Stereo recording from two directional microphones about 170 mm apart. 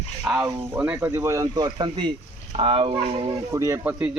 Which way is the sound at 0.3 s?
5° right (ahead or behind).